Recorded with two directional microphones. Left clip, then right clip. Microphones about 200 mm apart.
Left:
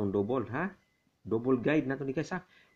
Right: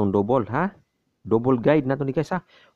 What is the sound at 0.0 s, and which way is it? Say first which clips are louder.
Speech: right 10 dB; 40° right (ahead or behind).